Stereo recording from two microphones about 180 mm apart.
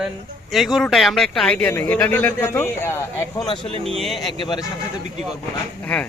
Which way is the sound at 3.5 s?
30° left (ahead or behind).